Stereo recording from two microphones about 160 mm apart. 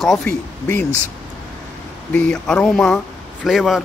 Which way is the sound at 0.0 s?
5° left (ahead or behind).